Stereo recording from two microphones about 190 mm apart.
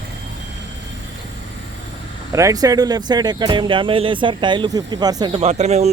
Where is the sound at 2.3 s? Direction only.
15° right (ahead or behind).